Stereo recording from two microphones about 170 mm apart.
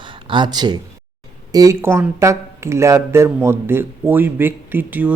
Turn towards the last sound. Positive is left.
turn(degrees=-10)  # may be behind; listen again after turning